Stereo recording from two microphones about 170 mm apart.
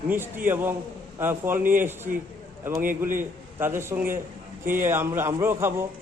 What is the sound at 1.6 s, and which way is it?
A man's voice, 55° right (ahead or behind).